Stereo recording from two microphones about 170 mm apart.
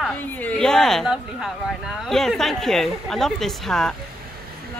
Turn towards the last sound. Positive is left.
turn(degrees=0)  # may be behind; listen again after turning